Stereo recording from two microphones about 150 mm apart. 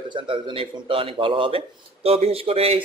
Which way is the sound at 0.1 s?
35° right (ahead or behind).